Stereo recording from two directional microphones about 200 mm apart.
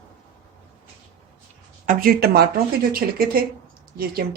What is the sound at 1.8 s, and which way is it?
Speech, 45° right (ahead or behind).